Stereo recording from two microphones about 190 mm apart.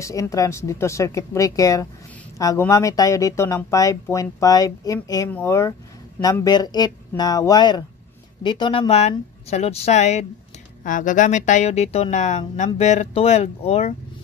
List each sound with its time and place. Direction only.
0.0 s speech: 15° left (ahead or behind); by 13.9 s 35° left (ahead or behind)